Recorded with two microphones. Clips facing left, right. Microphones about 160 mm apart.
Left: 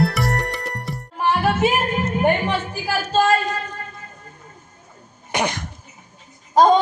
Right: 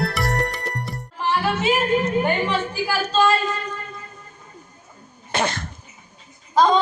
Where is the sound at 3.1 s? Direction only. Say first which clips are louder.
Left 2 dB; 45° left (ahead or behind).